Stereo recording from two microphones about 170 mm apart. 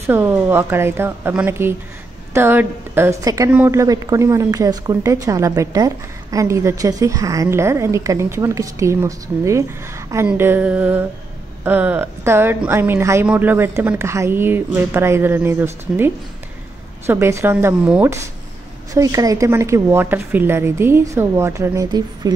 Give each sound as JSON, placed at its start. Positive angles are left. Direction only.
{"t": 0.0, "sound": "speech", "side_deg": -15}